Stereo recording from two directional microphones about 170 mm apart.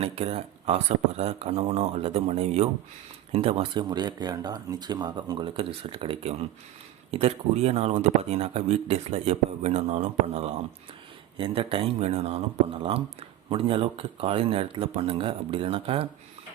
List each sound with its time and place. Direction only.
0.0 s a man's voice: 35° right (ahead or behind)